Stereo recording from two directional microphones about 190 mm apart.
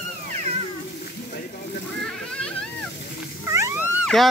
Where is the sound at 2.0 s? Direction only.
5° left (ahead or behind).